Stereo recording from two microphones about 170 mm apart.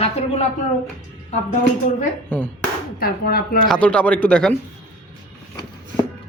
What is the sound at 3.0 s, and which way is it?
Speech, 60° left (ahead or behind).